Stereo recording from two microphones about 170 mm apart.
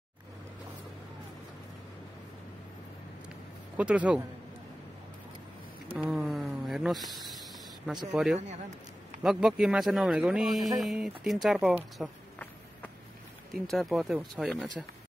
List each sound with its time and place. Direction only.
3.7 s a man's voice: 10° right (ahead or behind)
5.9 s a sound: centre (ahead or behind)
8.1 s speech: 5° right (ahead or behind)
8.4 s speech: 40° right (ahead or behind)
9.2 s speech: centre (ahead or behind)
13.5 s speech: centre (ahead or behind)